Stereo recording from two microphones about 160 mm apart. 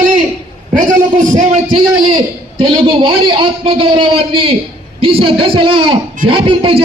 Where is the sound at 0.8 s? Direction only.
50° right (ahead or behind).